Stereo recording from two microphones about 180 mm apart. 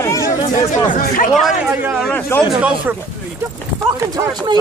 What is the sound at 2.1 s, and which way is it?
Speech, 10° left (ahead or behind).